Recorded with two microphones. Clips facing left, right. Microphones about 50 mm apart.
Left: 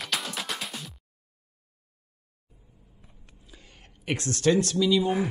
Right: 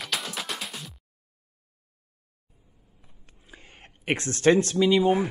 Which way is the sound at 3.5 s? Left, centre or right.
Right.